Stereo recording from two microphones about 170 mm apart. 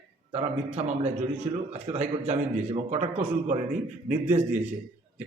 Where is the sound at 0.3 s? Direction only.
40° right (ahead or behind).